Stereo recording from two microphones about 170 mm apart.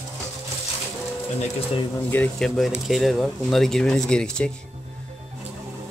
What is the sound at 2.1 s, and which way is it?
Speech, 5° left (ahead or behind).